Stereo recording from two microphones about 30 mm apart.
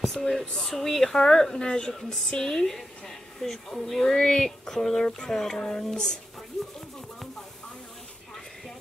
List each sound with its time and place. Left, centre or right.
0.0 s a sound: centre
0.6 s speech: centre
1.6 s speech: left
3.3 s speech: centre